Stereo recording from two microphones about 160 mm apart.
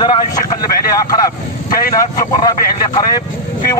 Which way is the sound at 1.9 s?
25° left (ahead or behind).